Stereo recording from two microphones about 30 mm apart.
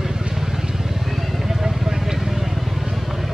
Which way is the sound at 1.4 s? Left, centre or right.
Centre.